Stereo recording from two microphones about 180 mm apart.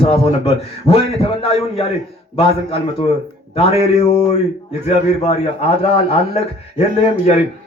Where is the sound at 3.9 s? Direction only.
35° left (ahead or behind).